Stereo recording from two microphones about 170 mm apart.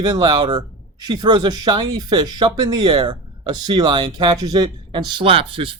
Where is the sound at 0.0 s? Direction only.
25° right (ahead or behind).